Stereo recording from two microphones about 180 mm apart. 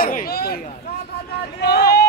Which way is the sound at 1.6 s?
65° left (ahead or behind).